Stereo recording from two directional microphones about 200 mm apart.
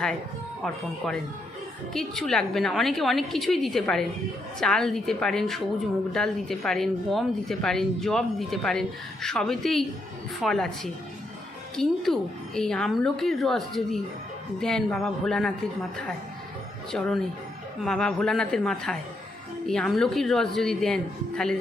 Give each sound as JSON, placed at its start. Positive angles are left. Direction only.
{"t": 0.6, "sound": "speech", "side_deg": 5}
{"t": 11.8, "sound": "speech", "side_deg": 0}